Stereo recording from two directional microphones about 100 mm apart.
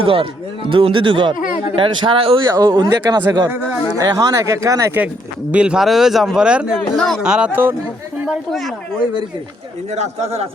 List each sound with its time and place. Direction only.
0.0 s speech: 65° right (ahead or behind)
2.6 s speech: 50° right (ahead or behind)
3.1 s speech: 40° right (ahead or behind)
5.5 s speech: 10° right (ahead or behind)
6.7 s speech: 5° left (ahead or behind)
7.2 s speech: 10° right (ahead or behind)
9.9 s speech: 90° right